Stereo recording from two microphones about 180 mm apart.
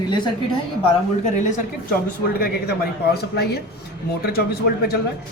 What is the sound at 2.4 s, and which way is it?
A woman's voice, 60° left (ahead or behind).